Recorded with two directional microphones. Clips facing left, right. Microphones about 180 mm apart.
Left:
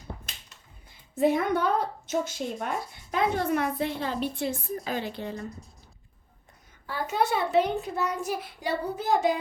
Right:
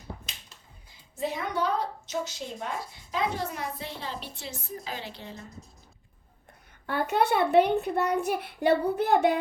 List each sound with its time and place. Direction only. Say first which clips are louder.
0.9 s a woman's voice: left 9 dB; 55° left (ahead or behind)
6.8 s a child's voice: right 2 dB; 60° right (ahead or behind)